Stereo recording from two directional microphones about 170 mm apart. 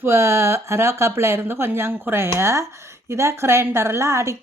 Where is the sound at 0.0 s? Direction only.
15° right (ahead or behind).